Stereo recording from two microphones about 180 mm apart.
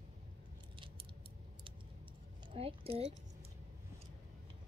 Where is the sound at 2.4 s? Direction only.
30° right (ahead or behind).